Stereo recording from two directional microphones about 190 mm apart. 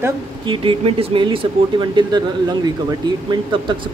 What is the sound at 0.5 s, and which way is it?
Speech, 30° right (ahead or behind).